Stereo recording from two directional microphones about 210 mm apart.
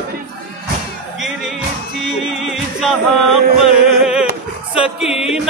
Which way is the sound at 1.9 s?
Centre (ahead or behind).